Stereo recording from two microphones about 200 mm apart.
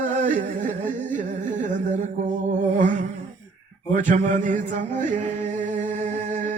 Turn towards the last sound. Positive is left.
turn(degrees=-40)  # may be behind; listen again after turning